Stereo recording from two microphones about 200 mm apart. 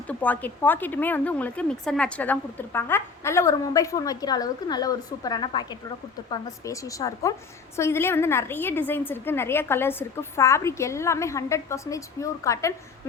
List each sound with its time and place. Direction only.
0.1 s speech: 10° left (ahead or behind)